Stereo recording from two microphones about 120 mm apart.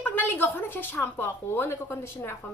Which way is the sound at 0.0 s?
15° left (ahead or behind).